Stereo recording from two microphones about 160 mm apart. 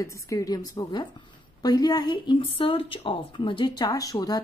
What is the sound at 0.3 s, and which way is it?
A woman's voice, 20° left (ahead or behind).